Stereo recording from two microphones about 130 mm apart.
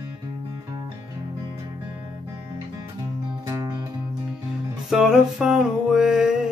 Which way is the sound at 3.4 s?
25° right (ahead or behind).